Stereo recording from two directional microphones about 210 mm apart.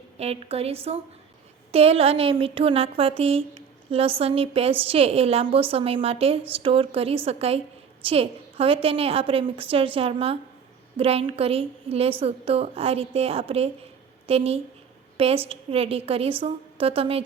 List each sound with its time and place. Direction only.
0.2 s a woman's voice: 30° right (ahead or behind)